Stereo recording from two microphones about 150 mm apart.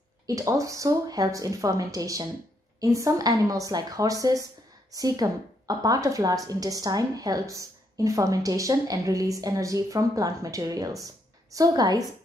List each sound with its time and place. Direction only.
0.3 s a woman's voice: 20° right (ahead or behind)